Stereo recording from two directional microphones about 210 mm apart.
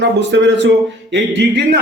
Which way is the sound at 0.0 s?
55° right (ahead or behind).